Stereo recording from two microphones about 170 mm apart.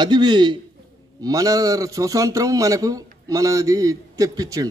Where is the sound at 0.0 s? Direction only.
25° right (ahead or behind).